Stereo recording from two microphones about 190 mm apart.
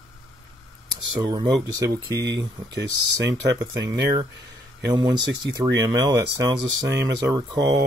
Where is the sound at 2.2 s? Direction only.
70° right (ahead or behind).